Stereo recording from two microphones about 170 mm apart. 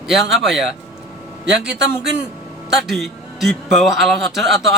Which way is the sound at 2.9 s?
Centre (ahead or behind).